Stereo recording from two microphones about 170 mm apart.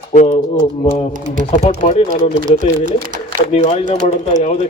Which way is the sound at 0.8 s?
35° left (ahead or behind).